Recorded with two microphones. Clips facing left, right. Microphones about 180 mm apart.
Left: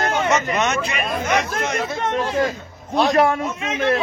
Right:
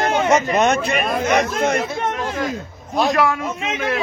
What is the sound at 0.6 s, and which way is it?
Speech, 55° right (ahead or behind).